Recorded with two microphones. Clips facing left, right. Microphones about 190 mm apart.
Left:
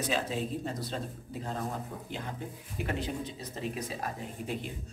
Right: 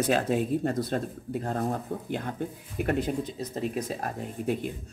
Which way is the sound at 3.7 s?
45° right (ahead or behind).